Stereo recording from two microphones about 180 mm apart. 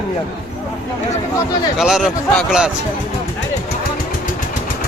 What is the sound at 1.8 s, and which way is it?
Speech, 5° right (ahead or behind).